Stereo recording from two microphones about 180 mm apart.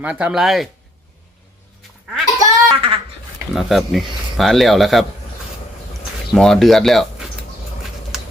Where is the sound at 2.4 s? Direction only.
30° right (ahead or behind).